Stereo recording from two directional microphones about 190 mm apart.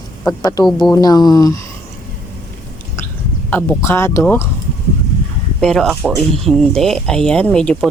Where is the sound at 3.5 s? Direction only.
10° left (ahead or behind).